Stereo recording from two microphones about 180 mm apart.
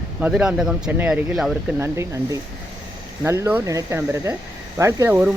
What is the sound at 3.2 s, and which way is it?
Speech, 15° right (ahead or behind).